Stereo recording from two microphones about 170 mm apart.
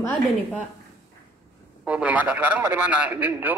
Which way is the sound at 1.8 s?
10° right (ahead or behind).